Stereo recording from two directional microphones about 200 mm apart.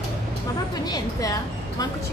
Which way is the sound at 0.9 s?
15° left (ahead or behind).